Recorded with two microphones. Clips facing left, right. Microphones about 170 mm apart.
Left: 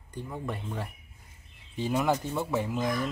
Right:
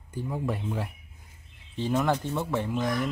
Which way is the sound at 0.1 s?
5° right (ahead or behind).